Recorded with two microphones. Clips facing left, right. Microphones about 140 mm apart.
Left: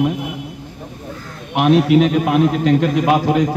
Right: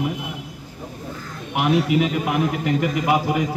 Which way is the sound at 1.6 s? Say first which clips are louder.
Left 6 dB; 90° left.